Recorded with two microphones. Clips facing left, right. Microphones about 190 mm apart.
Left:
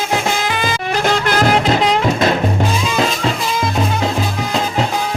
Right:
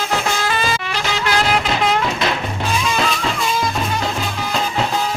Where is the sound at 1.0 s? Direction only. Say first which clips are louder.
Left 6 dB; 50° left (ahead or behind).